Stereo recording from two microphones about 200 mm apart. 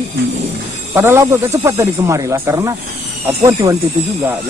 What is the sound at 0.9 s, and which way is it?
Speech, 10° right (ahead or behind).